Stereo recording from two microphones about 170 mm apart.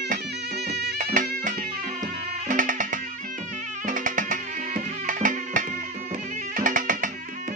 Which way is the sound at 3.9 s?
50° right (ahead or behind).